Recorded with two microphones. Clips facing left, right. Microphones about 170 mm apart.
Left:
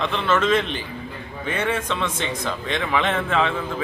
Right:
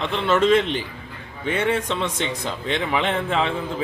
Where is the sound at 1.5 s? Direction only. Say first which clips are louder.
Right 2 dB; 25° right (ahead or behind).